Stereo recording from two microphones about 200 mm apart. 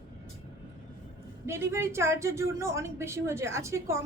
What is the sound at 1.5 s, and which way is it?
Speech, 15° right (ahead or behind).